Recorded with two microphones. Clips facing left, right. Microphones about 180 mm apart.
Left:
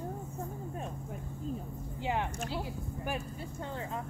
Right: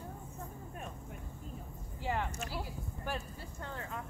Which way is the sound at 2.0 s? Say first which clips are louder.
Left 3 dB; 20° left (ahead or behind).